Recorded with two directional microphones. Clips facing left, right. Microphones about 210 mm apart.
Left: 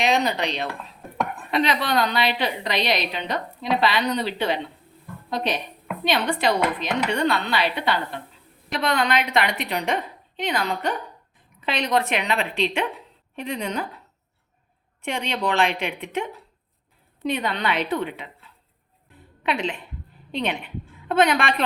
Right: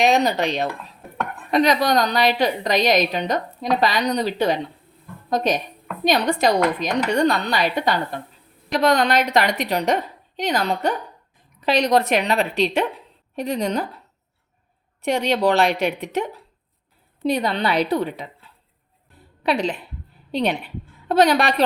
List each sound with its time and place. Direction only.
0.0 s a woman's voice: 45° right (ahead or behind)
15.0 s a woman's voice: 40° right (ahead or behind)
19.4 s a woman's voice: 35° right (ahead or behind)